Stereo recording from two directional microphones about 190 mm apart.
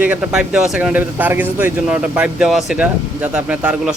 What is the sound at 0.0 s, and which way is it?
Speech, 5° right (ahead or behind).